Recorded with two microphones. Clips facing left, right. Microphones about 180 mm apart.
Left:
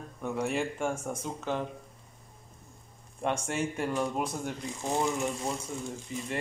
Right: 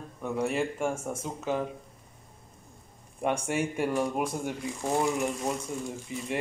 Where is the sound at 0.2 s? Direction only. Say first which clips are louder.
Right 2 dB; centre (ahead or behind).